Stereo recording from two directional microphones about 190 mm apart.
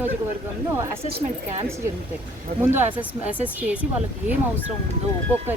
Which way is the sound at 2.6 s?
10° right (ahead or behind).